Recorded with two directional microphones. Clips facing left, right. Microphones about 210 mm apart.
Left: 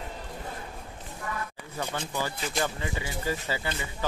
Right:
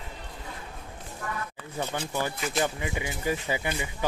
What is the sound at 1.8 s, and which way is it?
Speech, 15° right (ahead or behind).